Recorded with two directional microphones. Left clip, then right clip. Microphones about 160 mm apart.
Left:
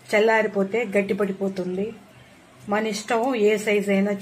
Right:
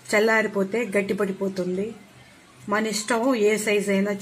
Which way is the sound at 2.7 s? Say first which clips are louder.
Left 1 dB; 45° right (ahead or behind).